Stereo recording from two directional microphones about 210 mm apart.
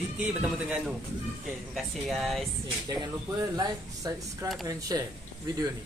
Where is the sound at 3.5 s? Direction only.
15° right (ahead or behind).